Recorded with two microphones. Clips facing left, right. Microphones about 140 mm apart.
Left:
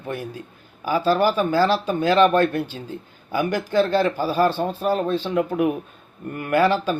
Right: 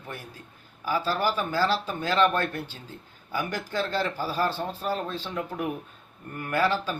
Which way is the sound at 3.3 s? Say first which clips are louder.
Left 9 dB; 70° left (ahead or behind).